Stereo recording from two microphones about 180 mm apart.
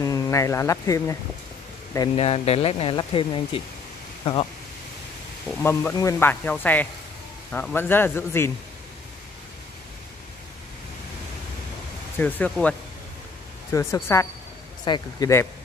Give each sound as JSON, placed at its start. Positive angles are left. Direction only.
{"t": 0.0, "sound": "speech", "side_deg": 15}
{"t": 2.1, "sound": "speech", "side_deg": 35}
{"t": 5.5, "sound": "speech", "side_deg": 10}
{"t": 12.2, "sound": "speech", "side_deg": 10}
{"t": 13.7, "sound": "speech", "side_deg": 15}